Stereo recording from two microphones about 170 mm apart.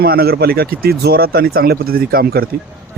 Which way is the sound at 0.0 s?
65° right (ahead or behind).